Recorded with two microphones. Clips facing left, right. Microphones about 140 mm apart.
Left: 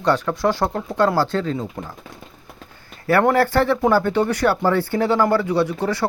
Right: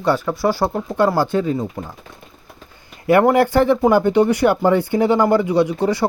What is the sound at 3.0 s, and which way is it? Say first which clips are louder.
Speech: right 3 dB; 15° right (ahead or behind).